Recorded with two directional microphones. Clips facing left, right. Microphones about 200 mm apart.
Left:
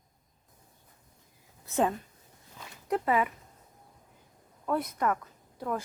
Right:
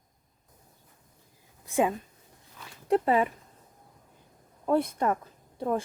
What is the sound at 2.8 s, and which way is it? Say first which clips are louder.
Speech: right 4 dB; 30° right (ahead or behind).